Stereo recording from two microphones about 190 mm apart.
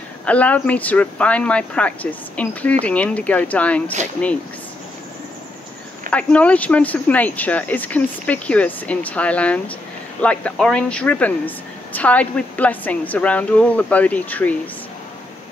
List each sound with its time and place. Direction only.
0.2 s a woman's voice: 5° left (ahead or behind)
6.0 s a woman's voice: 5° left (ahead or behind)